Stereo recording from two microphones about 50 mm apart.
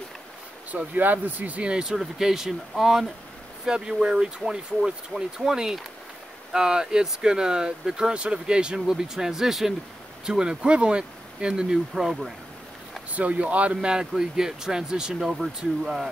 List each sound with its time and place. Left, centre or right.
0.7 s speech: right
1.6 s speech: centre
3.6 s speech: centre
13.1 s speech: right
13.7 s speech: centre